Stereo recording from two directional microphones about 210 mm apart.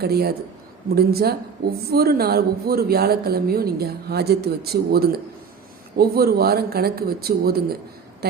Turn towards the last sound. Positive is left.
turn(degrees=-45)  # may be behind; listen again after turning